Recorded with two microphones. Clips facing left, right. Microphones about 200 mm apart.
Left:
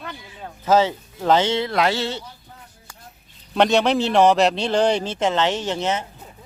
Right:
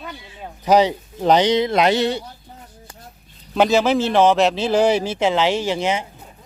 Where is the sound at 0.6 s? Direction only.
15° right (ahead or behind).